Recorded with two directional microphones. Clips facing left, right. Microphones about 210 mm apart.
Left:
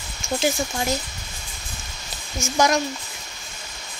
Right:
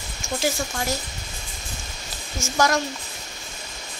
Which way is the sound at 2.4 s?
15° left (ahead or behind).